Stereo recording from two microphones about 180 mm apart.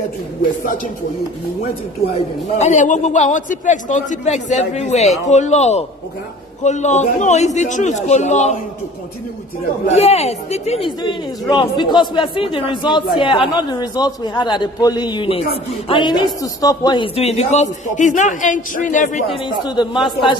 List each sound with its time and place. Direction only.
2.1 s a man's voice: 40° left (ahead or behind)
9.8 s a man's voice: 35° left (ahead or behind)
19.3 s speech: 25° left (ahead or behind)